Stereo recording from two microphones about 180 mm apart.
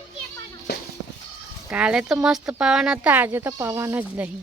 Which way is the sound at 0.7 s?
65° left (ahead or behind).